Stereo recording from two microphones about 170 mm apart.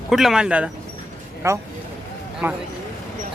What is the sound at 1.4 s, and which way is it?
Speech, 15° right (ahead or behind).